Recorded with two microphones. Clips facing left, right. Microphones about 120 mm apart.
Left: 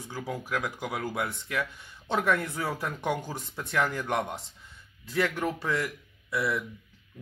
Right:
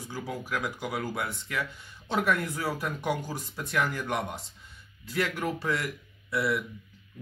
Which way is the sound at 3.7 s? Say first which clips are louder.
Left 1 dB; 20° left (ahead or behind).